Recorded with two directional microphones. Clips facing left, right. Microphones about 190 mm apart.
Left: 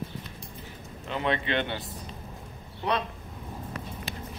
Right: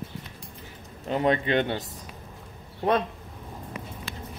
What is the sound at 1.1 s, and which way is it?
Speech, 40° right (ahead or behind).